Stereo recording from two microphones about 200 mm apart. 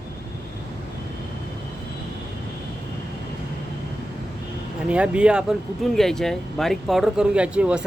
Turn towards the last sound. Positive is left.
turn(degrees=-5)  # may be behind; listen again after turning